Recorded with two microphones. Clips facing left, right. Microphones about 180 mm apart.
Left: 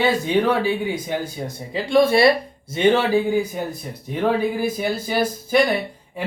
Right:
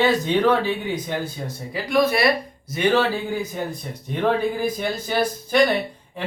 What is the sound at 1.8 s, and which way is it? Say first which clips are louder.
Speech: left 4 dB; 30° left (ahead or behind).